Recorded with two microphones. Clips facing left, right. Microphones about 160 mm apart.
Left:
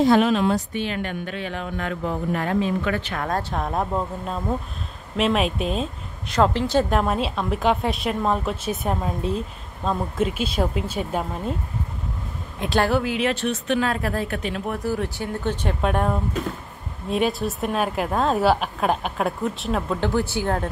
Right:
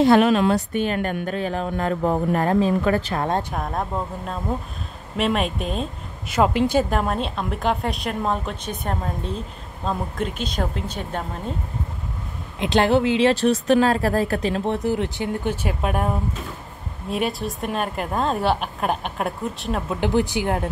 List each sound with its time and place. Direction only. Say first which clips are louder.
0.0 s a woman's voice: right 2 dB; 60° right (ahead or behind)
0.8 s a woman's voice: right 4 dB; 45° right (ahead or behind); by 3.4 s 30° right (ahead or behind)
3.5 s a woman's voice: left 2 dB; centre (ahead or behind)
6.9 s a woman's voice: left 1 dB; centre (ahead or behind)
12.5 s a woman's voice: right 3 dB; 20° right (ahead or behind)
15.5 s a woman's voice: left 1 dB; 5° right (ahead or behind)
20.0 s speech: right 2 dB; 15° right (ahead or behind)